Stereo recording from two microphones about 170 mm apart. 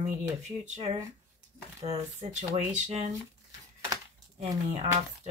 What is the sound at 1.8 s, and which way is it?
Speech, 40° right (ahead or behind).